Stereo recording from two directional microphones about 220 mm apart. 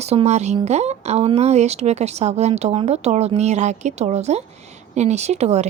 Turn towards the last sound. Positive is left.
turn(degrees=-30)  # may be behind; listen again after turning